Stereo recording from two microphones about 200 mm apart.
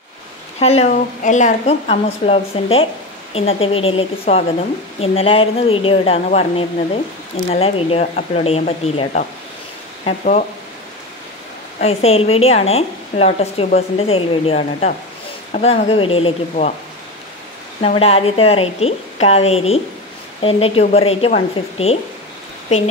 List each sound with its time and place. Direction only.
0.6 s a woman's voice: 30° left (ahead or behind)
11.8 s a woman's voice: 30° left (ahead or behind)
17.8 s a woman's voice: 30° left (ahead or behind)